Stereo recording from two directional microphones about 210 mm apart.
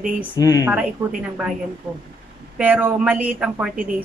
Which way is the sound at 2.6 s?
10° right (ahead or behind).